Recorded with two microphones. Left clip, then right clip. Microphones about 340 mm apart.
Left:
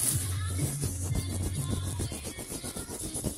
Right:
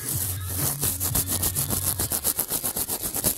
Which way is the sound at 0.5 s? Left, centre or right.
Right.